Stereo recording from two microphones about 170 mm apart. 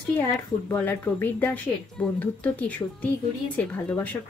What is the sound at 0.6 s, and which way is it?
Speech, 10° left (ahead or behind).